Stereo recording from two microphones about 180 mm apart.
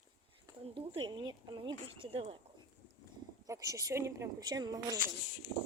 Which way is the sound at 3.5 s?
20° right (ahead or behind).